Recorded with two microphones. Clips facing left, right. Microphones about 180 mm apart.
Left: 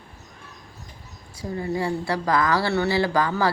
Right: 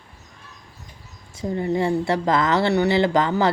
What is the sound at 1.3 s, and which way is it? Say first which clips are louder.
Speech: right 4 dB; 25° right (ahead or behind).